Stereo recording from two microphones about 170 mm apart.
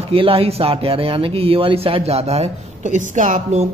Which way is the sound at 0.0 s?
35° right (ahead or behind).